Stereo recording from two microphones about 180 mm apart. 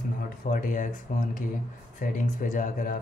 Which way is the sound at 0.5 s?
45° left (ahead or behind).